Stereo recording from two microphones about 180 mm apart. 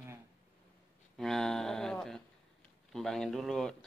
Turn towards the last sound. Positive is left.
turn(degrees=5)  # may be behind; listen again after turning